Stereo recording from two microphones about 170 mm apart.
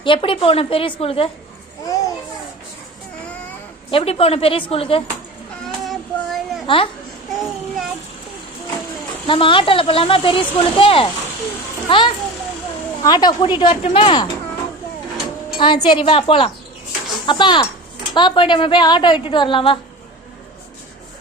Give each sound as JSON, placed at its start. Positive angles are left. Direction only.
{"t": 0.0, "sound": "speech", "side_deg": 30}
{"t": 1.8, "sound": "babbling", "side_deg": 20}
{"t": 3.9, "sound": "speech", "side_deg": 35}
{"t": 5.8, "sound": "child singing", "side_deg": 0}
{"t": 6.7, "sound": "speech", "side_deg": 30}
{"t": 7.3, "sound": "child singing", "side_deg": 0}
{"t": 9.2, "sound": "a woman's voice", "side_deg": 30}
{"t": 15.5, "sound": "a woman's voice", "side_deg": 30}